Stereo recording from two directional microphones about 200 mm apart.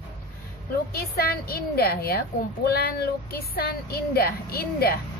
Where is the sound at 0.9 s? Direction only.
50° left (ahead or behind).